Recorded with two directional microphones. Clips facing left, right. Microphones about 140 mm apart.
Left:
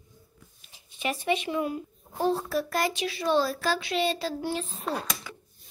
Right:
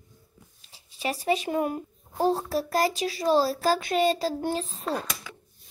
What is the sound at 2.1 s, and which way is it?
A child's voice, 35° right (ahead or behind).